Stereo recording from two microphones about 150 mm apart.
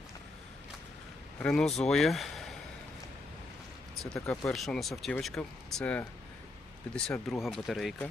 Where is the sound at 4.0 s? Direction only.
5° left (ahead or behind).